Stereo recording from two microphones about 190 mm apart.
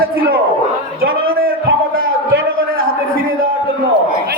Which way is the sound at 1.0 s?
90° right.